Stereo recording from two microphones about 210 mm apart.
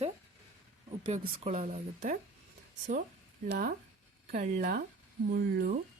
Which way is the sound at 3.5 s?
45° right (ahead or behind).